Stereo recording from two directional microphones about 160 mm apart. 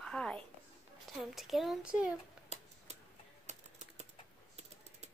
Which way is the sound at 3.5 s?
45° right (ahead or behind).